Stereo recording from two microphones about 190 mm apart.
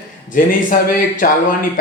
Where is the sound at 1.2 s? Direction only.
45° left (ahead or behind).